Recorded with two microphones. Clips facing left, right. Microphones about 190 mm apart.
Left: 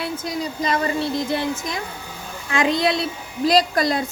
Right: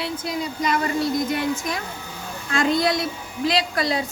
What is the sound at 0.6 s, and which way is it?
A woman's voice, 30° left (ahead or behind).